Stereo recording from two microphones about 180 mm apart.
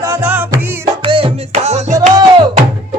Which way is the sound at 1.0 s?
30° right (ahead or behind).